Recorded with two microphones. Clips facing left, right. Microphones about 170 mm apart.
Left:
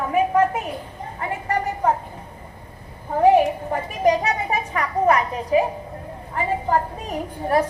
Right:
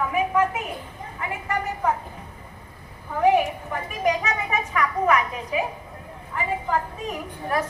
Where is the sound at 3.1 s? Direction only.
35° left (ahead or behind).